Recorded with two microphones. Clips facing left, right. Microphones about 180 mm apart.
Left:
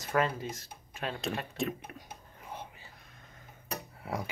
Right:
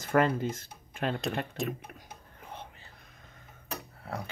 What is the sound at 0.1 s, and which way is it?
Speech, 55° right (ahead or behind).